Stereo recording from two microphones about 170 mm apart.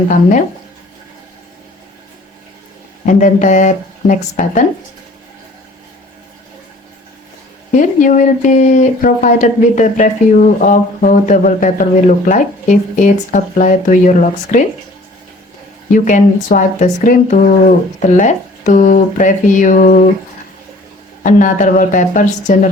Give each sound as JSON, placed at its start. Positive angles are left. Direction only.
{"t": 0.1, "sound": "speech", "side_deg": 45}
{"t": 3.1, "sound": "speech", "side_deg": 50}
{"t": 7.7, "sound": "speech", "side_deg": 50}
{"t": 15.9, "sound": "speech", "side_deg": 50}
{"t": 21.2, "sound": "speech", "side_deg": 50}